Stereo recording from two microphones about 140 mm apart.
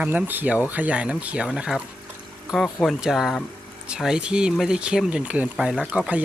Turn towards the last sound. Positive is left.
turn(degrees=-5)  # may be behind; listen again after turning